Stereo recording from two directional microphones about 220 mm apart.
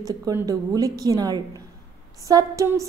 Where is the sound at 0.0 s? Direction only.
15° right (ahead or behind).